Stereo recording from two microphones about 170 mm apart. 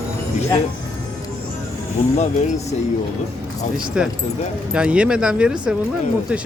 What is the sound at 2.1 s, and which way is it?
Speech, 40° left (ahead or behind).